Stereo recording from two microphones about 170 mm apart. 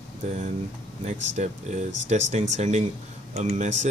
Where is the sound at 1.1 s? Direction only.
45° right (ahead or behind).